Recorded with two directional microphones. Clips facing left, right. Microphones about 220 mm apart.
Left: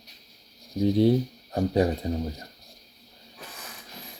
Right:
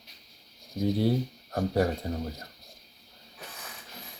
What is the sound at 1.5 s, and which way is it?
Speech, 15° left (ahead or behind).